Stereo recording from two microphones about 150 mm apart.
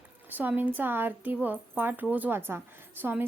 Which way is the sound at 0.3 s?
10° right (ahead or behind).